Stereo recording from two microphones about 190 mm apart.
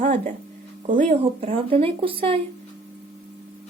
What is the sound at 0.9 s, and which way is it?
Speech, 40° right (ahead or behind).